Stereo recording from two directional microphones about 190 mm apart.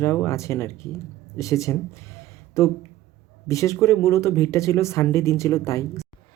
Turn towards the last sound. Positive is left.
turn(degrees=15)  # may be behind; listen again after turning